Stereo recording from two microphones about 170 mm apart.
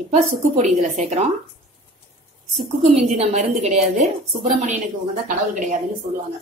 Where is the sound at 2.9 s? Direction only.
40° right (ahead or behind).